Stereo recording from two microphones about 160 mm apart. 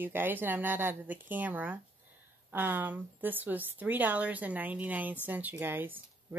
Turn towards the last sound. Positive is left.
turn(degrees=-10)  # may be behind; listen again after turning